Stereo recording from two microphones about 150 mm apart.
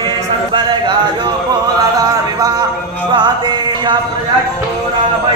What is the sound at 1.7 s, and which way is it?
Music, 25° right (ahead or behind).